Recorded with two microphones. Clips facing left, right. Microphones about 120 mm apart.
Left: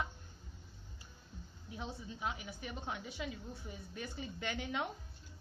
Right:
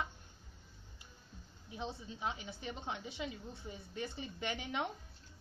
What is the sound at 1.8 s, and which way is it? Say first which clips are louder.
A woman's voice: right 1 dB; 25° right (ahead or behind).